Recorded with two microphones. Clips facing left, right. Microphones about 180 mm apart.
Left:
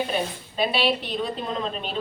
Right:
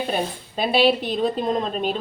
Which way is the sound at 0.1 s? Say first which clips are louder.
Right 2 dB; 40° right (ahead or behind).